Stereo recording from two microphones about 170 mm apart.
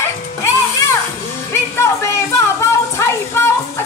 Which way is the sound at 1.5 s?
15° left (ahead or behind).